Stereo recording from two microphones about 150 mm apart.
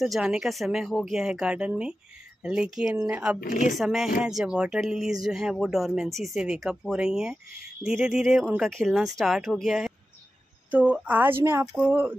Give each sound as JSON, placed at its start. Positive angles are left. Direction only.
{"t": 0.0, "sound": "a woman's voice", "side_deg": -5}
{"t": 3.3, "sound": "speech", "side_deg": 60}
{"t": 3.7, "sound": "a woman's voice", "side_deg": 0}